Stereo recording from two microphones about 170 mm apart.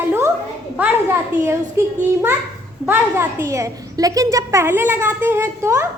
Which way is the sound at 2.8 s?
10° right (ahead or behind).